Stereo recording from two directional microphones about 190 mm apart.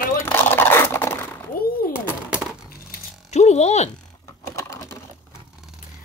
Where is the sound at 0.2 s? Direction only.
10° left (ahead or behind).